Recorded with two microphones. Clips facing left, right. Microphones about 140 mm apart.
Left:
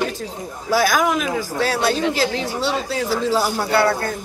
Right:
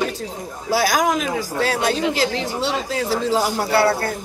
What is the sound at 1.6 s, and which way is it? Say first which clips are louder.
Speech: left 1 dB; 40° left (ahead or behind).